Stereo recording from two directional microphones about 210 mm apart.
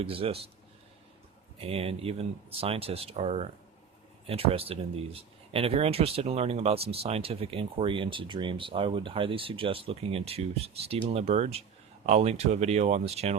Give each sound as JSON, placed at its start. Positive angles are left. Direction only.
{"t": 0.0, "sound": "speech", "side_deg": -25}
{"t": 1.5, "sound": "speech", "side_deg": -25}